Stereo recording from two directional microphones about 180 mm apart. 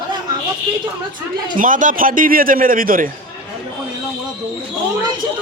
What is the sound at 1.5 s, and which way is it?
A man's voice, 45° right (ahead or behind).